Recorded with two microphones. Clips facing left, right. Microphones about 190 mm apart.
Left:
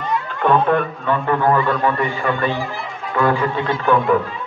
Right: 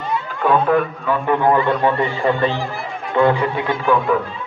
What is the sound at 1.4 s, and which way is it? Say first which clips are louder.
A man's voice: right 2 dB; 20° right (ahead or behind).